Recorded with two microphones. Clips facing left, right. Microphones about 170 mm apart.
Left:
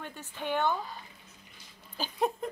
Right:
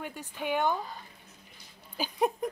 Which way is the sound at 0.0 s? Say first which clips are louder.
Right 2 dB; 10° right (ahead or behind).